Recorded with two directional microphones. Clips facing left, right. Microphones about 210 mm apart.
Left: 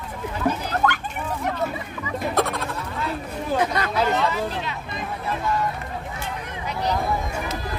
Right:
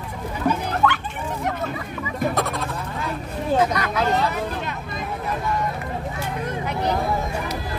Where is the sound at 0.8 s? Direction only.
40° left (ahead or behind).